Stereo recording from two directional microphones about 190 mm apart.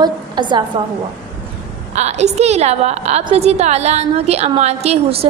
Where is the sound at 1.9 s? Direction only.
35° right (ahead or behind).